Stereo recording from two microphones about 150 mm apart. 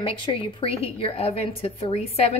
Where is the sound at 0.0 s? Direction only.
35° left (ahead or behind).